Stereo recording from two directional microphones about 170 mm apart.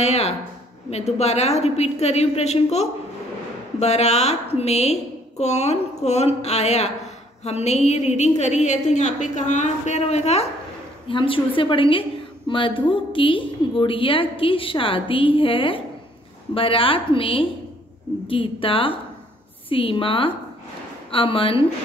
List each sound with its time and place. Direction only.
0.0 s a woman's voice: 40° left (ahead or behind)